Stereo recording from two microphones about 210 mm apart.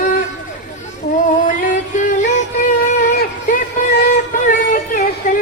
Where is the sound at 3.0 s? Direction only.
40° left (ahead or behind).